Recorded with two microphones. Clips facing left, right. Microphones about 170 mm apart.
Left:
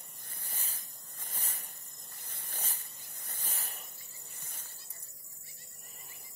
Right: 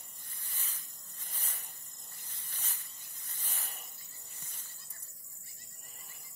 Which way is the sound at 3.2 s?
45° left (ahead or behind).